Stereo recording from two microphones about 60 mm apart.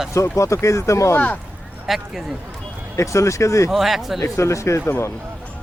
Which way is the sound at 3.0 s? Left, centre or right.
Left.